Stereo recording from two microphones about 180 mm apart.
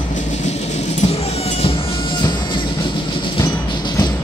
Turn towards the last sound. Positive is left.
turn(degrees=25)  # may be behind; listen again after turning